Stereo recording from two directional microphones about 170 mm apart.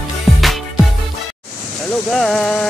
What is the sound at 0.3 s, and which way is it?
Music, centre (ahead or behind).